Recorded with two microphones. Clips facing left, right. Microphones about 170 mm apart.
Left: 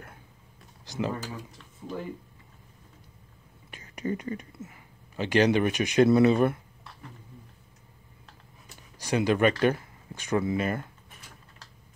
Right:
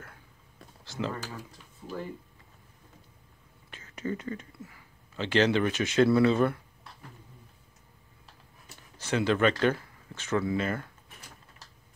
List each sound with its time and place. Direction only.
0.8 s speech: 15° left (ahead or behind)
3.7 s speech: 15° left (ahead or behind)
8.9 s speech: 15° left (ahead or behind)